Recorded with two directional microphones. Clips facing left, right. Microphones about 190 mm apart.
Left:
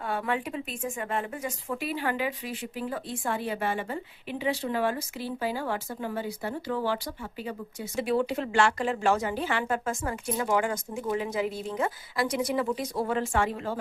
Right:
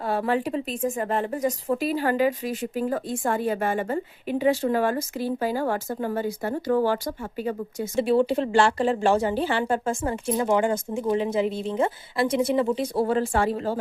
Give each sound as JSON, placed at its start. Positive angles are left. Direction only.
{"t": 0.0, "sound": "speech", "side_deg": -35}
{"t": 7.9, "sound": "speech", "side_deg": -30}